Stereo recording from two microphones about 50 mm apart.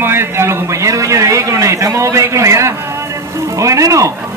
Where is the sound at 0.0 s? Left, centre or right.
Right.